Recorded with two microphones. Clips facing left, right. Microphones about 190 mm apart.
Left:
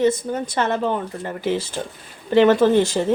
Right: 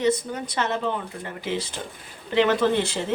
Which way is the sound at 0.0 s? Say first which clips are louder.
Left 4 dB; 50° left (ahead or behind).